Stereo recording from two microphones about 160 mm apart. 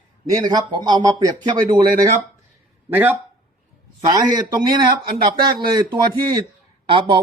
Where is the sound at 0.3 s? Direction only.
25° right (ahead or behind).